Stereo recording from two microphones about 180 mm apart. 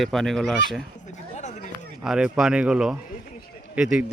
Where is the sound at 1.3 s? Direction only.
40° left (ahead or behind).